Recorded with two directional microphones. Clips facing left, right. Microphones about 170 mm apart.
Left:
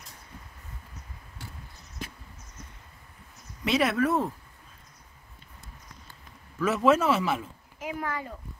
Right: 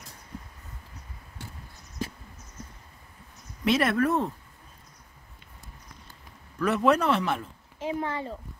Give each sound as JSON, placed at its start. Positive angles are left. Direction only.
{"t": 3.6, "sound": "speech", "side_deg": 0}
{"t": 6.6, "sound": "speech", "side_deg": 5}
{"t": 7.8, "sound": "speech", "side_deg": -25}